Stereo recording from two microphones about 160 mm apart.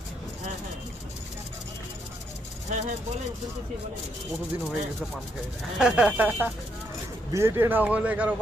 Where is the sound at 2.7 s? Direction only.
45° right (ahead or behind).